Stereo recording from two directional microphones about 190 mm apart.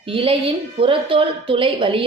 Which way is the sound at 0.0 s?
30° right (ahead or behind).